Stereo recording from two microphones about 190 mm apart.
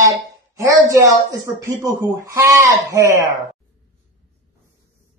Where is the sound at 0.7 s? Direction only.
20° right (ahead or behind).